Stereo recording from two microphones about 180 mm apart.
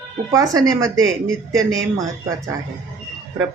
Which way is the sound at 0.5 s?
20° right (ahead or behind).